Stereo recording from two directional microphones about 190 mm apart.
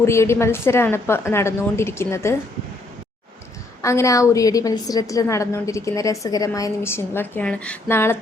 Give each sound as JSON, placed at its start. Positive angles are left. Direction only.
{"t": 0.0, "sound": "a woman's voice", "side_deg": 15}
{"t": 3.8, "sound": "a woman's voice", "side_deg": 15}